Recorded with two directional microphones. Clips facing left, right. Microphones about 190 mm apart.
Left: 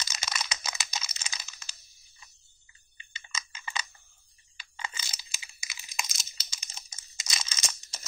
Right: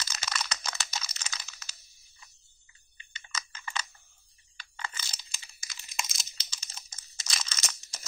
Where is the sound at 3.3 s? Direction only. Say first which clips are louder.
Even; 15° left (ahead or behind).